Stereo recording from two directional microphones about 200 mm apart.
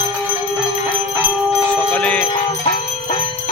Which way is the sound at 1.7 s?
5° left (ahead or behind).